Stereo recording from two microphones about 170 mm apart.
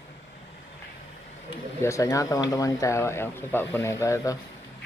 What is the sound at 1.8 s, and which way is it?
Speech, 20° left (ahead or behind).